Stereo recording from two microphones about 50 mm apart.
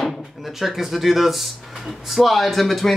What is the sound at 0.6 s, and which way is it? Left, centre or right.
Speech, centre.